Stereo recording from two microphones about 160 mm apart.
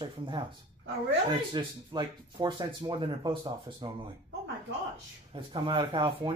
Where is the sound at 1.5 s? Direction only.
30° right (ahead or behind).